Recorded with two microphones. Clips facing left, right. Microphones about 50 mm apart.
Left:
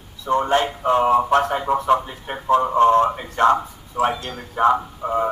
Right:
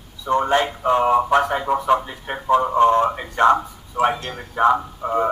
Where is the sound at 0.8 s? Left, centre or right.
Centre.